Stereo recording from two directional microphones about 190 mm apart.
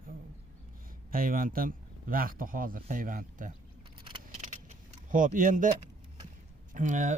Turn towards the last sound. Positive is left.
turn(degrees=-40)  # may be behind; listen again after turning